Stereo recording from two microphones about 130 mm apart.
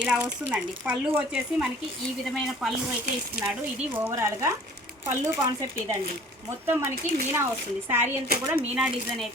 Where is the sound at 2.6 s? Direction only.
Centre (ahead or behind).